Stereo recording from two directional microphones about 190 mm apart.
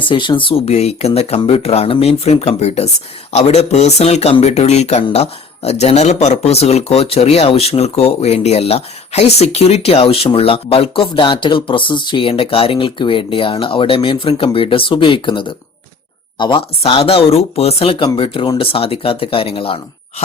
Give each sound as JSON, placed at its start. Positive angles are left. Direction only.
{"t": 0.1, "sound": "speech", "side_deg": 25}